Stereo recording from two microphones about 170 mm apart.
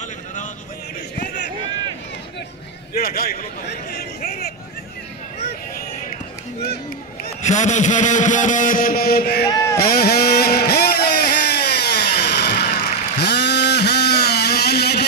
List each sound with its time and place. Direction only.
3.0 s a man's voice: 60° left (ahead or behind)
5.4 s a sound: 70° left (ahead or behind)
7.4 s speech: 45° left (ahead or behind); by 9.5 s 65° left (ahead or behind)
9.8 s vehicle: 65° left (ahead or behind)